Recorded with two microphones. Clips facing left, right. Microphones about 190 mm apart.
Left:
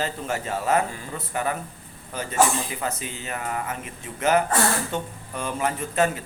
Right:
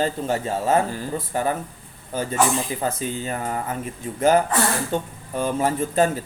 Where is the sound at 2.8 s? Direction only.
35° right (ahead or behind).